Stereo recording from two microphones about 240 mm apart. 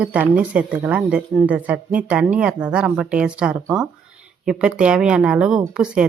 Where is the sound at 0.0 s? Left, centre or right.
Centre.